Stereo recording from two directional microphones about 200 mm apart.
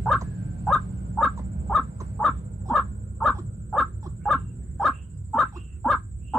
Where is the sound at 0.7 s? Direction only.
Centre (ahead or behind).